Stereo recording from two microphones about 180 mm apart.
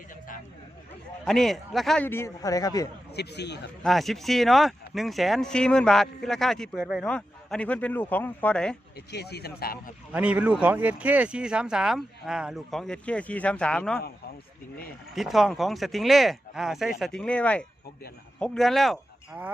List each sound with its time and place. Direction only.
1.2 s speech: centre (ahead or behind)
2.0 s speech: 15° left (ahead or behind)
3.2 s a man's voice: 70° left (ahead or behind)
3.8 s speech: centre (ahead or behind)
9.1 s speech: 65° left (ahead or behind)
10.1 s speech: 10° right (ahead or behind)
15.1 s speech: centre (ahead or behind)